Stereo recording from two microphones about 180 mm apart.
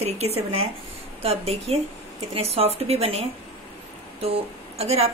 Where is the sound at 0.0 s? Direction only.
35° right (ahead or behind).